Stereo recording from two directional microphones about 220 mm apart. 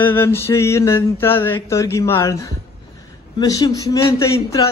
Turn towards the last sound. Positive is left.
turn(degrees=15)  # may be behind; listen again after turning